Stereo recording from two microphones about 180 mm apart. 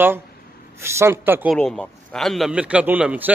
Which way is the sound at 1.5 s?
5° left (ahead or behind).